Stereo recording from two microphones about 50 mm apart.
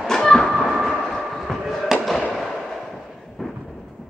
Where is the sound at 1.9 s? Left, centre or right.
Centre.